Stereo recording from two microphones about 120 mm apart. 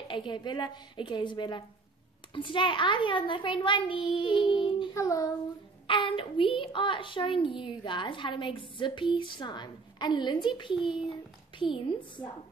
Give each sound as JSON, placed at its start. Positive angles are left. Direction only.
{"t": 0.1, "sound": "a woman's voice", "side_deg": 40}
{"t": 4.9, "sound": "child singing", "side_deg": 25}
{"t": 5.9, "sound": "a child's voice", "side_deg": 45}